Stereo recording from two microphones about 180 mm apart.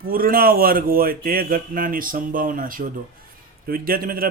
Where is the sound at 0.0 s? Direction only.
55° right (ahead or behind).